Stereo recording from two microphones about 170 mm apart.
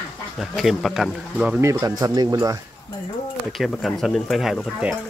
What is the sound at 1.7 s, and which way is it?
Speech, 20° right (ahead or behind).